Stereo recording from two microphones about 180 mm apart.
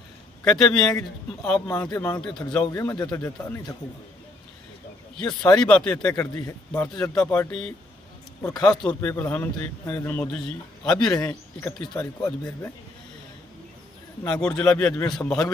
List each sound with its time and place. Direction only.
0.4 s a man's voice: 5° left (ahead or behind)
1.7 s a man's voice: 20° left (ahead or behind)
2.7 s a man's voice: 15° left (ahead or behind)
5.1 s a man's voice: 5° left (ahead or behind)
9.0 s a man's voice: 10° left (ahead or behind)
14.2 s a man's voice: 5° left (ahead or behind)